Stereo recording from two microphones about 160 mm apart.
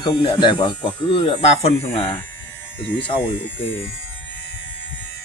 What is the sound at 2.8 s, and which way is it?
Speech, 10° left (ahead or behind).